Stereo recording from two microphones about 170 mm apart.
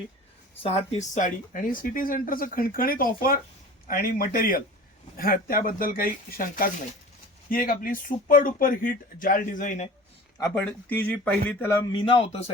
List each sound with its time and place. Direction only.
0.6 s speech: 35° left (ahead or behind)
10.5 s a man's voice: 10° left (ahead or behind)
11.9 s a man's voice: 30° left (ahead or behind)